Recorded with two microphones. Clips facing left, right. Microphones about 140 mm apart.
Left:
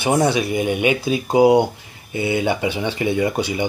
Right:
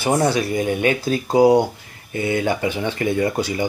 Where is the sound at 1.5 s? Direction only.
25° left (ahead or behind).